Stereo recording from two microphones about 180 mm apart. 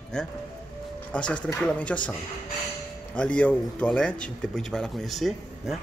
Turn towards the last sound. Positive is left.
turn(degrees=0)  # may be behind; listen again after turning